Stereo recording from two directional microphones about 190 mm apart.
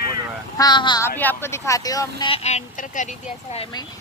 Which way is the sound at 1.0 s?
10° left (ahead or behind).